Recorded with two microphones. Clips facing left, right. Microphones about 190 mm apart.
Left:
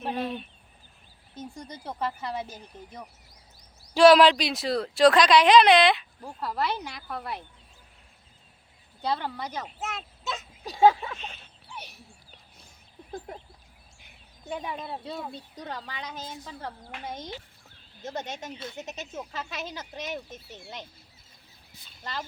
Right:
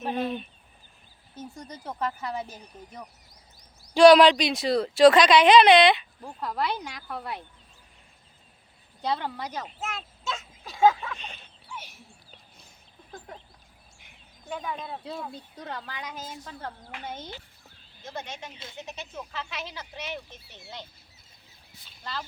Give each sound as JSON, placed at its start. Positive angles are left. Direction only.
{"t": 0.0, "sound": "speech", "side_deg": 0}
{"t": 1.5, "sound": "speech", "side_deg": 10}
{"t": 3.9, "sound": "speech", "side_deg": 0}
{"t": 9.3, "sound": "a child's voice", "side_deg": -10}
{"t": 9.8, "sound": "a sound", "side_deg": 0}
{"t": 10.7, "sound": "speech", "side_deg": 35}
{"t": 11.2, "sound": "a sound", "side_deg": 0}
{"t": 14.5, "sound": "speech", "side_deg": 15}
{"t": 16.4, "sound": "speech", "side_deg": 10}
{"t": 18.2, "sound": "speech", "side_deg": 45}
{"t": 22.0, "sound": "speech", "side_deg": 15}